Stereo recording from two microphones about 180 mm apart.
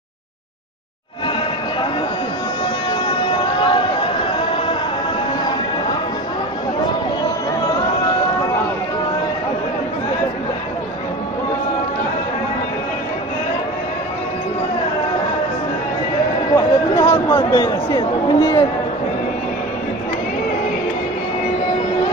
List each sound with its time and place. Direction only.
2.9 s music: 25° left (ahead or behind)
16.5 s chatter: 20° left (ahead or behind)
17.4 s speech: 25° left (ahead or behind)